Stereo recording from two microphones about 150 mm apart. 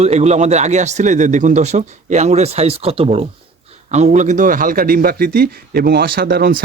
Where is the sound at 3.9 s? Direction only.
50° right (ahead or behind); by 6.6 s 80° right.